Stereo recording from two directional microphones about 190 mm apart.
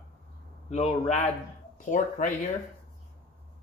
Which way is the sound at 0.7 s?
35° left (ahead or behind).